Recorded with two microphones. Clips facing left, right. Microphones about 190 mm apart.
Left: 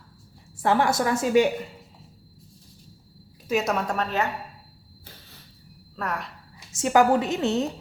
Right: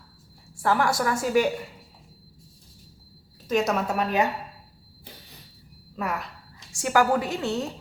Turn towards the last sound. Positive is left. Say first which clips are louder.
# left 3 dB
turn(degrees=20)  # may be behind; listen again after turning